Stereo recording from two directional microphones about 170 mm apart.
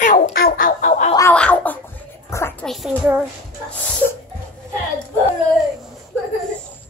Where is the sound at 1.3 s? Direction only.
10° left (ahead or behind).